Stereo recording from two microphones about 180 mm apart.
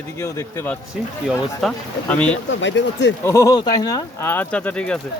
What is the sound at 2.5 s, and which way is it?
Speech, 85° left.